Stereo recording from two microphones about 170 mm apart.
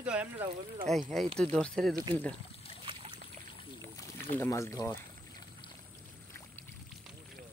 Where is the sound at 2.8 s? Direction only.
30° right (ahead or behind).